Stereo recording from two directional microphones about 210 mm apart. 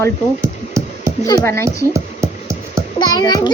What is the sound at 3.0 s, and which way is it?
Speech, 20° left (ahead or behind).